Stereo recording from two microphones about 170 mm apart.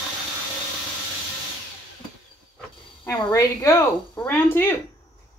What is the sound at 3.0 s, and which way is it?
A woman's voice, 15° left (ahead or behind).